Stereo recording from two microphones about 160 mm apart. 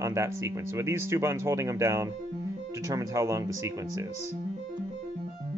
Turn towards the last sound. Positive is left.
turn(degrees=-20)  # may be behind; listen again after turning